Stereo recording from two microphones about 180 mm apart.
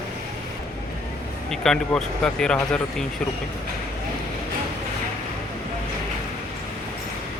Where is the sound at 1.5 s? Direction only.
5° left (ahead or behind).